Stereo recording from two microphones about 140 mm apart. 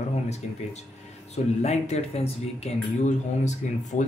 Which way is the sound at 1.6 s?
50° left (ahead or behind).